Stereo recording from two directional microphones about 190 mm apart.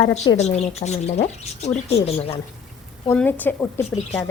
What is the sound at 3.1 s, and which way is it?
Speech, 10° left (ahead or behind).